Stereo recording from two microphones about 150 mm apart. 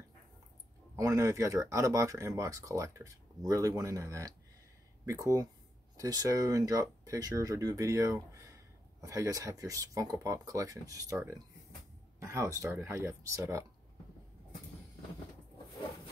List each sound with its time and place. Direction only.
0.9 s speech: 20° right (ahead or behind)